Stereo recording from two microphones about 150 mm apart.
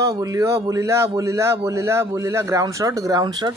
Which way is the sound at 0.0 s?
20° right (ahead or behind).